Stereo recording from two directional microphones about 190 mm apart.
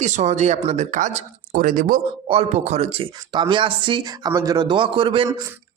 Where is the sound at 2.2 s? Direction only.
30° right (ahead or behind).